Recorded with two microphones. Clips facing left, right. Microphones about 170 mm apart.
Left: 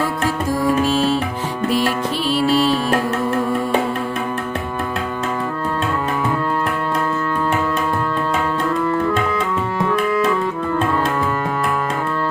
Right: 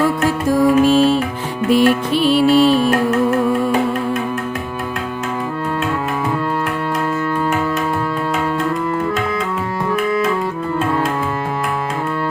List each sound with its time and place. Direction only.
1.7 s music: 60° right (ahead or behind)